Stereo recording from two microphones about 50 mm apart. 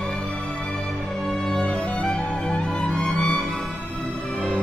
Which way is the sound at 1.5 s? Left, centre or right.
Left.